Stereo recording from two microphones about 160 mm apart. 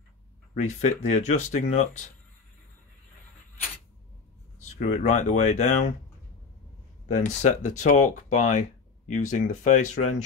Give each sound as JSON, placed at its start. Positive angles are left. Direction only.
{"t": 0.6, "sound": "speech", "side_deg": 45}
{"t": 4.7, "sound": "speech", "side_deg": 50}
{"t": 7.1, "sound": "speech", "side_deg": 45}